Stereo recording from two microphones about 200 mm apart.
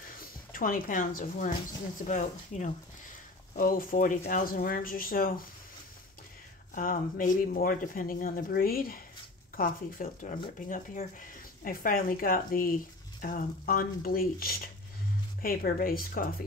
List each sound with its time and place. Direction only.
0.2 s speech: 45° left (ahead or behind)
6.7 s speech: 45° left (ahead or behind)